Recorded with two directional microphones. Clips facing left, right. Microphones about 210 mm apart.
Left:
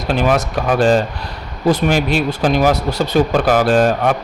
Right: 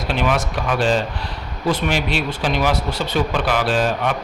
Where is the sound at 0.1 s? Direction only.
40° left (ahead or behind).